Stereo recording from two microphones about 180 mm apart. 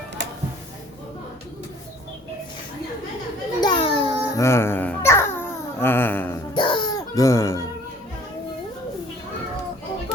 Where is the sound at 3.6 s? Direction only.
25° left (ahead or behind).